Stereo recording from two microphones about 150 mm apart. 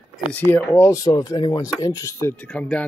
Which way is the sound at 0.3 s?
10° left (ahead or behind).